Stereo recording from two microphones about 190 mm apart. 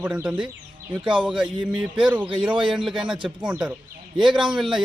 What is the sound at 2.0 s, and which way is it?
A man's voice, 5° right (ahead or behind).